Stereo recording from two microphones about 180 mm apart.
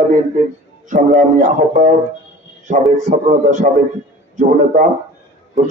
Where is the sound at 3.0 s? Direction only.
40° right (ahead or behind).